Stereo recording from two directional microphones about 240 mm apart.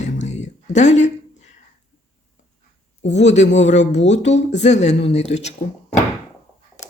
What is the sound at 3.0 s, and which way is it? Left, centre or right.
Speech, left.